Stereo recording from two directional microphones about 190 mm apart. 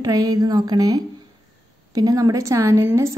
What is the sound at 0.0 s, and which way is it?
A woman's voice, 20° right (ahead or behind).